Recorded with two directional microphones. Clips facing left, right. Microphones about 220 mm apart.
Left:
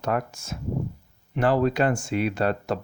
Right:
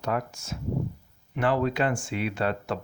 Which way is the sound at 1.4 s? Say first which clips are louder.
Left 3 dB; 40° left (ahead or behind).